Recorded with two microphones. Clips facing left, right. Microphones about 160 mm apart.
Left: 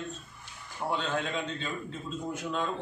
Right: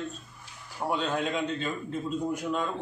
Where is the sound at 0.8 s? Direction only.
20° right (ahead or behind).